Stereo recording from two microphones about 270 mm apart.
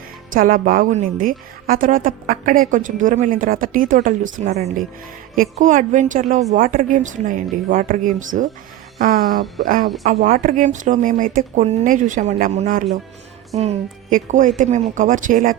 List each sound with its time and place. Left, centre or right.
0.3 s a woman's voice: right